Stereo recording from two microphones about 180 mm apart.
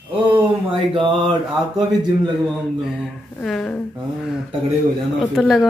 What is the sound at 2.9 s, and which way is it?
Speech, centre (ahead or behind).